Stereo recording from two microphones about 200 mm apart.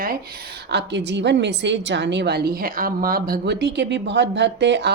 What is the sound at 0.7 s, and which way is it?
A woman's voice, 60° right (ahead or behind).